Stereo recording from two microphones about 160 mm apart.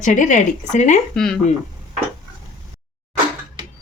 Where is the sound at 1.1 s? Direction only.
5° left (ahead or behind).